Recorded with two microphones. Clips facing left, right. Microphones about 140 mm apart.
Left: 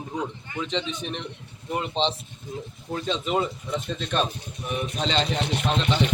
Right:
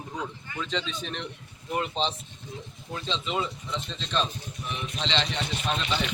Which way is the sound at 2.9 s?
50° left (ahead or behind).